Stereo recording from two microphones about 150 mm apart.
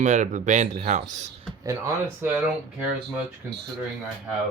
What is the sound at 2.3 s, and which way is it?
Speech, 5° right (ahead or behind).